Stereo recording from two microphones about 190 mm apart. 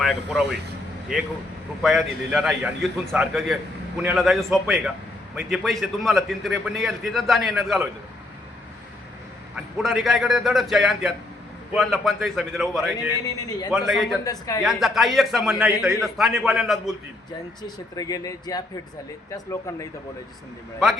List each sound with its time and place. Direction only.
0.0 s a man's voice: centre (ahead or behind)
1.8 s a man's voice: centre (ahead or behind)
9.6 s a man's voice: centre (ahead or behind)
13.2 s speech: 20° left (ahead or behind)
13.7 s a man's voice: centre (ahead or behind)
14.3 s speech: 20° left (ahead or behind)
14.6 s a man's voice: centre (ahead or behind)
17.6 s speech: 20° left (ahead or behind)